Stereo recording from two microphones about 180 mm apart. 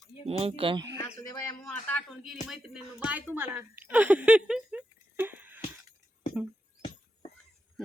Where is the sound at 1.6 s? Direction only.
5° left (ahead or behind).